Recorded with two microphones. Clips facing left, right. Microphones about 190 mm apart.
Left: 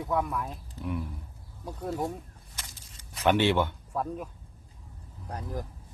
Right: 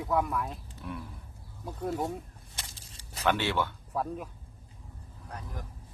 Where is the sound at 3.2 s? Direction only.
20° left (ahead or behind).